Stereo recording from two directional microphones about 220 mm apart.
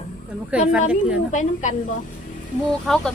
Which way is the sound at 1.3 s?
35° left (ahead or behind).